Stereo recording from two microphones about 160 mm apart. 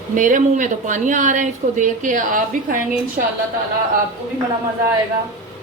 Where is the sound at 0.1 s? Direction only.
55° right (ahead or behind).